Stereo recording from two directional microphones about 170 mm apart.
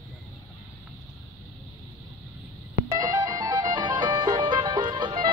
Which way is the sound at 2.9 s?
25° right (ahead or behind).